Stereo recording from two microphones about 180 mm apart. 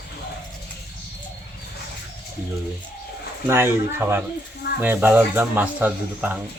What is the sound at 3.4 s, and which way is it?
Speech, 15° right (ahead or behind).